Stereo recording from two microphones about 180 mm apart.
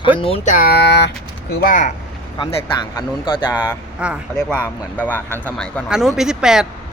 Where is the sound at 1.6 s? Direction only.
45° left (ahead or behind).